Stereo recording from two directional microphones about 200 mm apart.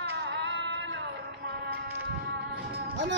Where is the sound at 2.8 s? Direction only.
60° right (ahead or behind).